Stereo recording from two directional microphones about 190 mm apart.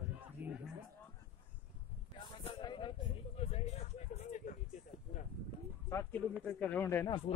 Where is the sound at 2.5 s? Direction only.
25° left (ahead or behind).